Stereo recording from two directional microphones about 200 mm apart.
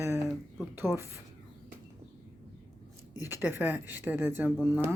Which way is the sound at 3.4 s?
10° right (ahead or behind).